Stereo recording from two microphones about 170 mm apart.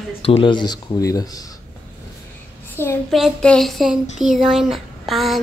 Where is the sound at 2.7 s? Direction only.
15° left (ahead or behind).